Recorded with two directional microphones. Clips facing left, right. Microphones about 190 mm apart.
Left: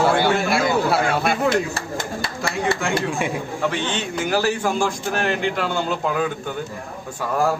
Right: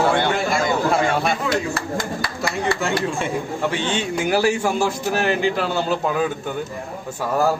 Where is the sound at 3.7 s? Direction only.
10° right (ahead or behind).